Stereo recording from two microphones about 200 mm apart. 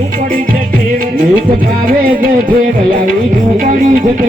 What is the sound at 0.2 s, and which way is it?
Music, 45° right (ahead or behind).